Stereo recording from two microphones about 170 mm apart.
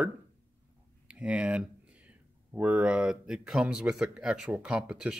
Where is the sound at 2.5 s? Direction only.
10° right (ahead or behind).